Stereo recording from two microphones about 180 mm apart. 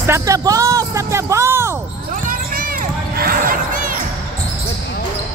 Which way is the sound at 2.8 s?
50° right (ahead or behind).